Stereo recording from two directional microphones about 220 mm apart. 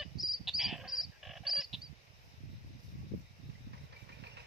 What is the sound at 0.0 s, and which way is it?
Frog, centre (ahead or behind).